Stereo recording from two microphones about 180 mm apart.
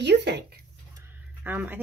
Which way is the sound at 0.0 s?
70° right (ahead or behind).